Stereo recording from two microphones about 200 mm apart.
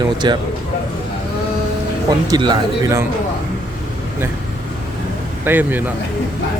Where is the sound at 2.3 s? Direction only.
20° right (ahead or behind).